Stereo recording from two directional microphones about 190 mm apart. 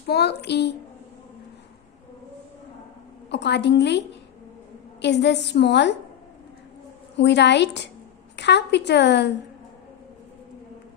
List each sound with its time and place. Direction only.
0.1 s a woman's voice: 60° left (ahead or behind)
3.2 s a woman's voice: 65° left (ahead or behind)
5.0 s a woman's voice: 65° left (ahead or behind)
7.2 s a woman's voice: 65° left (ahead or behind)